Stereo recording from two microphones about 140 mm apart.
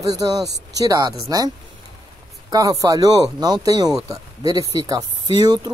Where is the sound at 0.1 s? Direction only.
30° right (ahead or behind).